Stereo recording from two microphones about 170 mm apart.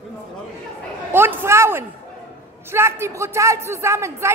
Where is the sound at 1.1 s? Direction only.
15° right (ahead or behind).